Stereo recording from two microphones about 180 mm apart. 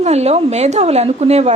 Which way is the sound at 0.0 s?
35° right (ahead or behind).